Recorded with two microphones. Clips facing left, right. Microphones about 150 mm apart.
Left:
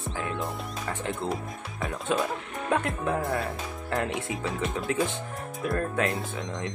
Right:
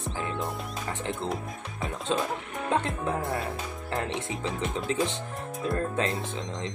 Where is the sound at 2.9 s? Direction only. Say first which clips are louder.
Left 2 dB; centre (ahead or behind).